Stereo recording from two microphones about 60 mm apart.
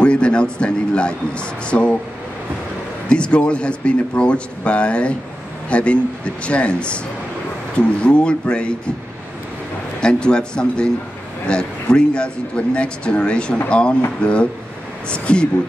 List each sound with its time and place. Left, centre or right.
0.0 s a man's voice: centre
3.1 s speech: centre
9.9 s speech: centre